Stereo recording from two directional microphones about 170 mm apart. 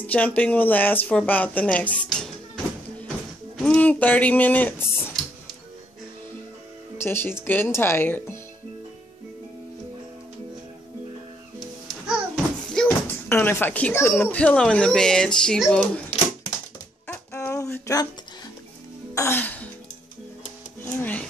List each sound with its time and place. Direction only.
0.0 s speech: 10° left (ahead or behind)
7.0 s speech: 15° left (ahead or behind)
12.7 s speech: 10° left (ahead or behind)
17.1 s a sound: 15° left (ahead or behind)
19.1 s music: 15° left (ahead or behind)
20.8 s a sound: 10° left (ahead or behind)